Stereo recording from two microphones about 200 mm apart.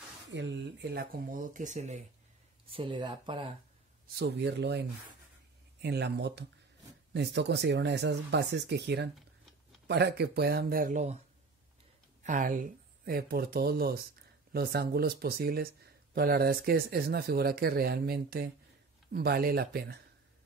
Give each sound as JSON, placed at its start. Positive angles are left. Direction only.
{"t": 0.3, "sound": "speech", "side_deg": -65}
{"t": 4.2, "sound": "speech", "side_deg": -55}